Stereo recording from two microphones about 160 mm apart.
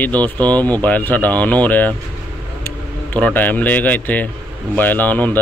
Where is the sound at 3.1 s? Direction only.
10° left (ahead or behind).